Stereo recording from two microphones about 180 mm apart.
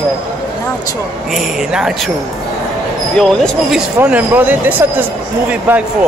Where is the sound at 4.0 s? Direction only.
10° right (ahead or behind).